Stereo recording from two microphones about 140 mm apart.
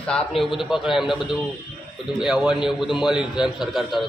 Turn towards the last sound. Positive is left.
turn(degrees=0)  # may be behind; listen again after turning